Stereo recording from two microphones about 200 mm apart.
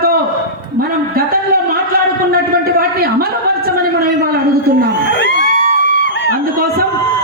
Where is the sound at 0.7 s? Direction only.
50° right (ahead or behind).